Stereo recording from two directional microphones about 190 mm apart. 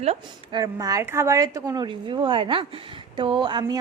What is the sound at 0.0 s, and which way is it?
Speech, 30° right (ahead or behind).